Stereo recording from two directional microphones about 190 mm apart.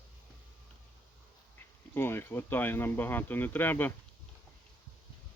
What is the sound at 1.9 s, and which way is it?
Speech, 10° left (ahead or behind).